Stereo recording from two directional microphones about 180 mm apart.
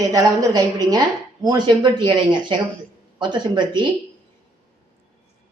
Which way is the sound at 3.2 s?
25° right (ahead or behind).